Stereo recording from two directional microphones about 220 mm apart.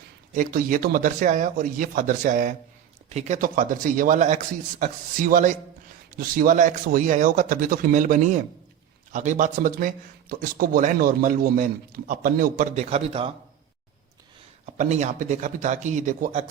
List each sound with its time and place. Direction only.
0.3 s a man's voice: 40° right (ahead or behind)
14.8 s a man's voice: 30° right (ahead or behind)